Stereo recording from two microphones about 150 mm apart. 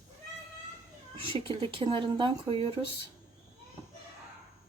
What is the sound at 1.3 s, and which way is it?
Speech, 35° right (ahead or behind).